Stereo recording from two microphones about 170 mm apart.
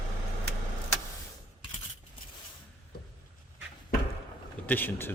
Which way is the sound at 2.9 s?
65° left (ahead or behind).